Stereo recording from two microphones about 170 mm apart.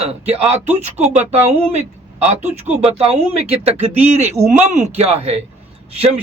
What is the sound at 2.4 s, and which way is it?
Speech, 10° right (ahead or behind).